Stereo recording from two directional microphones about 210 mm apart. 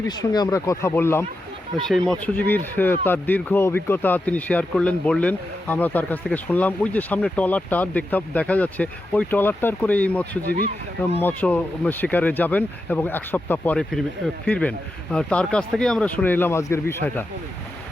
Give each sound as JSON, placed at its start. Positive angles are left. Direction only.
{"t": 0.1, "sound": "speech", "side_deg": 20}
{"t": 1.7, "sound": "speech", "side_deg": 0}